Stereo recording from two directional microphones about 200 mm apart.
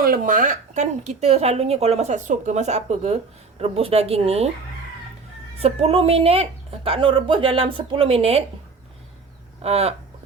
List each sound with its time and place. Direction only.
0.0 s speech: 45° right (ahead or behind)
5.5 s a woman's voice: 30° right (ahead or behind)
9.6 s a sound: 30° right (ahead or behind)